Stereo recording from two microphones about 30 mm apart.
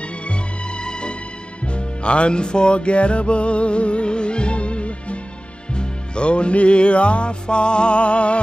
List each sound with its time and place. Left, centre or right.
0.3 s music: left